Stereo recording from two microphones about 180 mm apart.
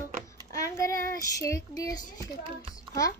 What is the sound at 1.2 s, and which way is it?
Child singing, 20° left (ahead or behind).